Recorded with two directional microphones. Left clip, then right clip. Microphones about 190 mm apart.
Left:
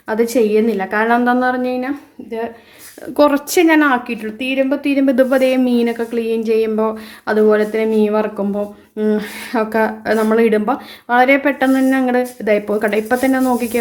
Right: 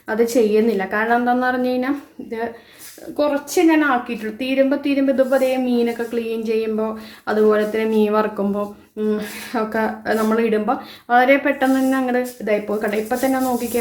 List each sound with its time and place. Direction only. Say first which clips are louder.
0.1 s a woman's voice: left 2 dB; 15° left (ahead or behind)
1.0 s speech: left 4 dB; 30° left (ahead or behind); by 1.9 s 10° left (ahead or behind)
3.2 s speech: left 5 dB; 45° left (ahead or behind); by 5.0 s 15° left (ahead or behind)
5.0 s speech: left 4 dB; 35° left (ahead or behind); by 8.6 s 10° left (ahead or behind)
9.0 s speech: left 4 dB; 30° left (ahead or behind)